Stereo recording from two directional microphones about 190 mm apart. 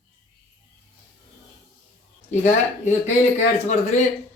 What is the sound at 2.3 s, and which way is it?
Speech, 35° left (ahead or behind).